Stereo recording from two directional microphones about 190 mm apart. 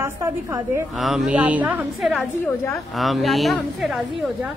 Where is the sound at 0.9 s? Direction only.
Centre (ahead or behind).